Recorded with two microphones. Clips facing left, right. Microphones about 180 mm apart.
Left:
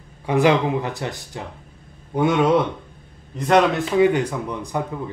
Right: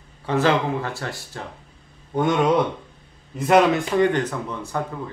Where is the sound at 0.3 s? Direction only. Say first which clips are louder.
Left 3 dB; 15° left (ahead or behind).